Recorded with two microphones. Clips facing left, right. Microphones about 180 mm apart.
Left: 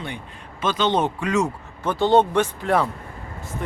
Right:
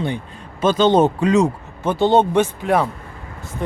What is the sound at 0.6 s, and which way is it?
Speech, 45° right (ahead or behind).